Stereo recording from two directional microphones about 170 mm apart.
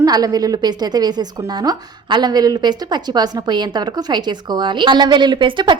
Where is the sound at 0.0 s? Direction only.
20° right (ahead or behind).